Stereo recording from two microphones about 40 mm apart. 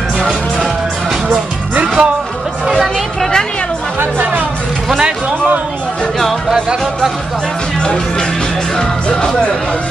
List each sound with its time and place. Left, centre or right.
2.0 s speech: right
4.2 s music: right
7.8 s speech: left